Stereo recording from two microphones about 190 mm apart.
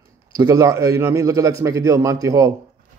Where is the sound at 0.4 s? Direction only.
20° right (ahead or behind).